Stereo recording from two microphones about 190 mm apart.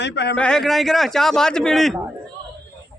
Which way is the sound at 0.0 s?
65° left (ahead or behind).